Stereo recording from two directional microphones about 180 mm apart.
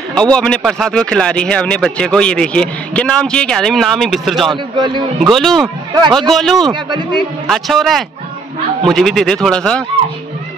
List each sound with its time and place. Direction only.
0.1 s speech: 5° left (ahead or behind)
4.5 s a man's voice: 25° right (ahead or behind)
5.2 s speech: centre (ahead or behind)
6.7 s a man's voice: 25° right (ahead or behind)
7.4 s speech: centre (ahead or behind)